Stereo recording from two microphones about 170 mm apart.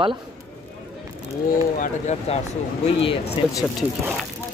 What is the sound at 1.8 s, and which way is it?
Speech, 40° left (ahead or behind).